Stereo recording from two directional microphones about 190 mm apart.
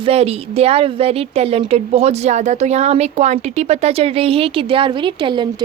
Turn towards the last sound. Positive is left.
turn(degrees=-25)  # may be behind; listen again after turning